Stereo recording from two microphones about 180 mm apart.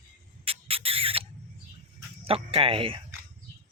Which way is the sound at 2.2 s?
30° right (ahead or behind).